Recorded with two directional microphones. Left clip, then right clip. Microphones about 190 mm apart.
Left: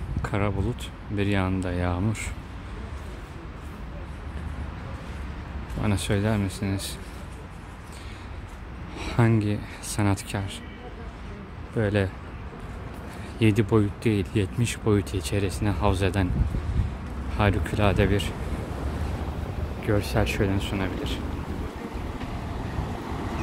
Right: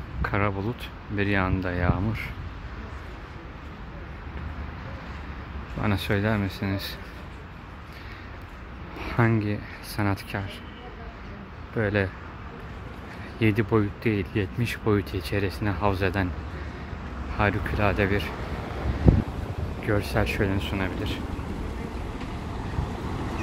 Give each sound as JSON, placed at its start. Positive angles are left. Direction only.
{"t": 0.2, "sound": "speech", "side_deg": 10}
{"t": 5.8, "sound": "speech", "side_deg": 5}
{"t": 8.9, "sound": "speech", "side_deg": 15}
{"t": 11.7, "sound": "speech", "side_deg": 15}
{"t": 13.4, "sound": "speech", "side_deg": 15}
{"t": 17.4, "sound": "speech", "side_deg": 20}
{"t": 19.9, "sound": "speech", "side_deg": 15}